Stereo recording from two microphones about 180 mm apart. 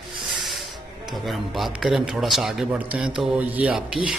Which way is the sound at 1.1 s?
Centre (ahead or behind).